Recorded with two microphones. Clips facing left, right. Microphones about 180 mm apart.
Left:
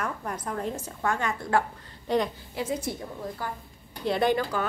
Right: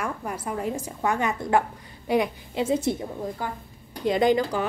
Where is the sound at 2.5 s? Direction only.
25° right (ahead or behind).